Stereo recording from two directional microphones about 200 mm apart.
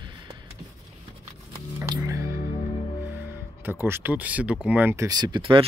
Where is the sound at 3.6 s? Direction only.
10° right (ahead or behind).